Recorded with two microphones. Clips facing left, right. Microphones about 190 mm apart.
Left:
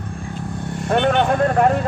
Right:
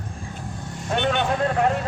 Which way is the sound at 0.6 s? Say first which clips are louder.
Left 6 dB; 60° left (ahead or behind).